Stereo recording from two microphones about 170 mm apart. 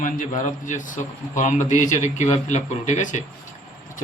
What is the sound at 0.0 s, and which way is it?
A man's voice, 50° left (ahead or behind).